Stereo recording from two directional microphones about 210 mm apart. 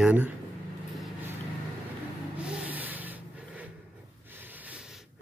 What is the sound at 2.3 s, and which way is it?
Vehicle, 5° right (ahead or behind).